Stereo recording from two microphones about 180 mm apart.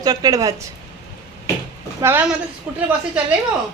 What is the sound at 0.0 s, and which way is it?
Speech, 20° right (ahead or behind).